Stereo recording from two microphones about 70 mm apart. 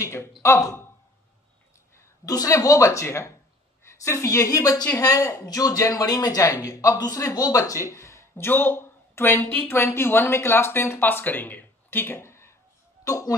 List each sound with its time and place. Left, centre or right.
0.0 s speech: left
2.2 s a woman's voice: left
9.4 s a woman's voice: centre
9.7 s speech: left
13.0 s speech: left